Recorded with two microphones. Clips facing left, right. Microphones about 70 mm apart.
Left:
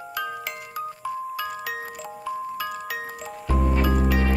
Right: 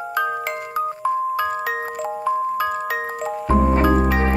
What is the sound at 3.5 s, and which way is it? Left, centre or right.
Music, right.